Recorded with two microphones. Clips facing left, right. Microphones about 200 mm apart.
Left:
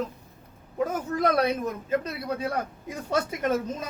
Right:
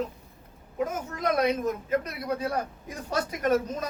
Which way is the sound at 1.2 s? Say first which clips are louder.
Left 1 dB; 30° left (ahead or behind).